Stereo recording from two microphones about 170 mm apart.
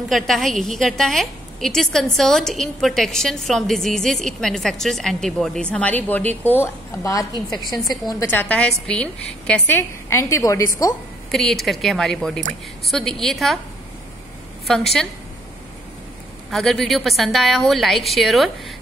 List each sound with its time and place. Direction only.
0.1 s a woman's voice: centre (ahead or behind); by 10.7 s 15° left (ahead or behind)
11.3 s a woman's voice: centre (ahead or behind)
14.7 s a woman's voice: centre (ahead or behind)
16.4 s a woman's voice: centre (ahead or behind)